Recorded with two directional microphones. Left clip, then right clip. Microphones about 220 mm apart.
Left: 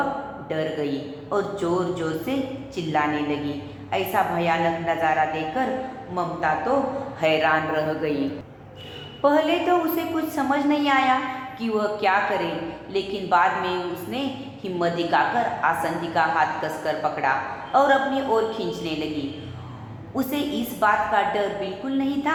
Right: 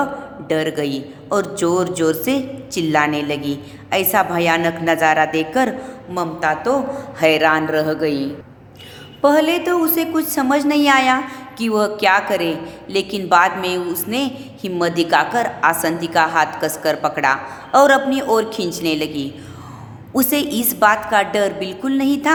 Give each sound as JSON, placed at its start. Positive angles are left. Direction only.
{"t": 0.4, "sound": "a woman's voice", "side_deg": -55}
{"t": 9.2, "sound": "a woman's voice", "side_deg": -50}
{"t": 20.1, "sound": "a woman's voice", "side_deg": -50}